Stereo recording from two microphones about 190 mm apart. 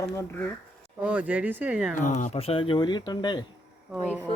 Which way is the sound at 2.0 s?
40° left (ahead or behind).